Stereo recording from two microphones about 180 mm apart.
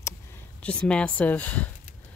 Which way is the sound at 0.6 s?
5° left (ahead or behind).